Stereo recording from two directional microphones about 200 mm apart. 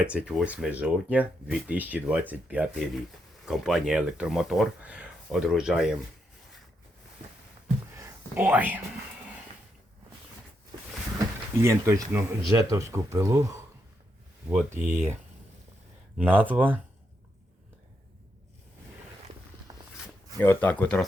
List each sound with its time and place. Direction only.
0.0 s speech: 5° right (ahead or behind)
7.9 s a sound: 10° right (ahead or behind)
11.6 s speech: 15° right (ahead or behind)
14.5 s speech: 5° right (ahead or behind)
16.1 s speech: 10° right (ahead or behind)
19.7 s walk: 20° right (ahead or behind)
20.4 s speech: 10° left (ahead or behind)